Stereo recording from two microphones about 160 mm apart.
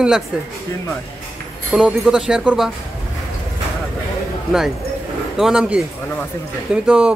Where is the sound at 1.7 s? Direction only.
Centre (ahead or behind).